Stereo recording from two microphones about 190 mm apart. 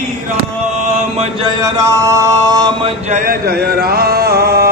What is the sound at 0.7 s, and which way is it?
Chant, 35° right (ahead or behind).